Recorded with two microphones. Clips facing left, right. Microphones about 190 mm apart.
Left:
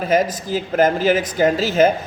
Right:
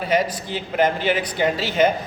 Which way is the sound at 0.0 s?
45° left (ahead or behind).